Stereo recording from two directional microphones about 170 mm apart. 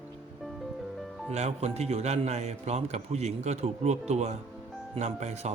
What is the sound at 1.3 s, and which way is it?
Speech, 40° right (ahead or behind).